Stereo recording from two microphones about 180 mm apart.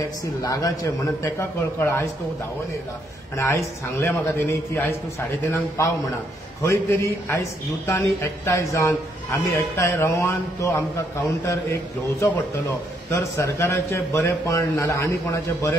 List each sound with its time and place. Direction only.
0.4 s a man's voice: 20° left (ahead or behind)
3.3 s a man's voice: 15° left (ahead or behind)